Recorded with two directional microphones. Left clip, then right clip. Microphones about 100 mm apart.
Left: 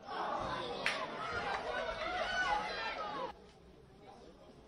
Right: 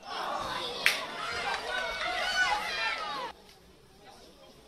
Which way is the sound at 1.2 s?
15° right (ahead or behind).